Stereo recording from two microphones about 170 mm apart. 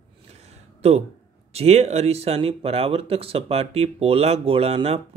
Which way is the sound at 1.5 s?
40° right (ahead or behind).